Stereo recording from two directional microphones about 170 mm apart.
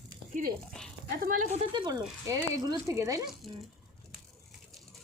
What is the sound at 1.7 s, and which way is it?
Speech, 25° right (ahead or behind).